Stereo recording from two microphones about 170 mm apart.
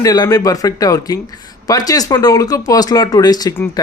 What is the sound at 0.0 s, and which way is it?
Speech, 20° left (ahead or behind).